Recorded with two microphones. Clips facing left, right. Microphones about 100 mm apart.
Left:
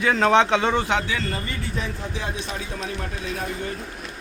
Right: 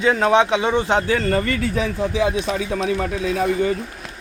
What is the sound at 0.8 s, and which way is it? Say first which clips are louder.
Speech: right 4 dB; 35° right (ahead or behind).